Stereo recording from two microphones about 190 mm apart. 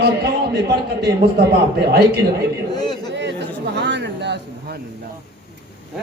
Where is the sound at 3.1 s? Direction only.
65° right (ahead or behind).